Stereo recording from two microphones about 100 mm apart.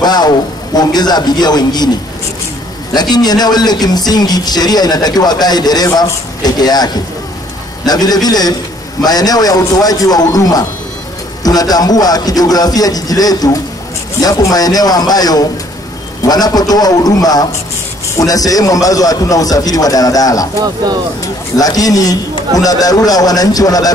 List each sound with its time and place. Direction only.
0.0 s speech: 45° left (ahead or behind)
2.9 s a man's voice: 45° left (ahead or behind)
20.6 s speech: 40° right (ahead or behind)
21.5 s a man's voice: 40° left (ahead or behind)